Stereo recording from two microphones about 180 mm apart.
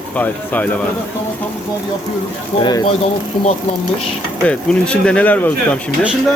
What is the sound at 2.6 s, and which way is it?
Speech, 25° left (ahead or behind).